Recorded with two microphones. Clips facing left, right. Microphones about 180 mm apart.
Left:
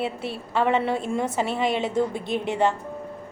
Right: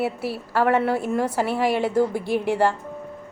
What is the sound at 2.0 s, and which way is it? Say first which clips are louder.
Speech: right 3 dB; 25° left (ahead or behind).